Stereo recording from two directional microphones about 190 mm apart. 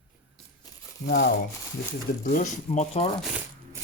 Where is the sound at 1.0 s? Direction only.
60° left (ahead or behind).